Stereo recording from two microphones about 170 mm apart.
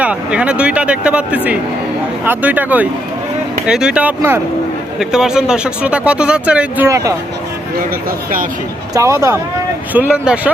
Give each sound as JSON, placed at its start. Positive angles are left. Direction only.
{"t": 0.0, "sound": "speech", "side_deg": -5}
{"t": 8.9, "sound": "speech", "side_deg": -20}
{"t": 9.9, "sound": "speech", "side_deg": -10}